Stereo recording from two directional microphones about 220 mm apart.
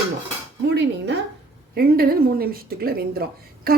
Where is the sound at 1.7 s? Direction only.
45° right (ahead or behind).